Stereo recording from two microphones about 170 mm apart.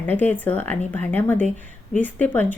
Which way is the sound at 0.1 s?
10° left (ahead or behind).